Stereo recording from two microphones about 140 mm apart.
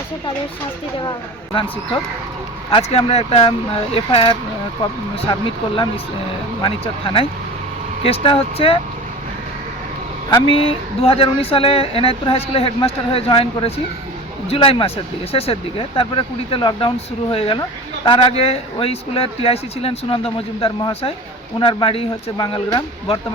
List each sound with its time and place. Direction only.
2.6 s speech: 45° left (ahead or behind)
10.2 s speech: 40° left (ahead or behind)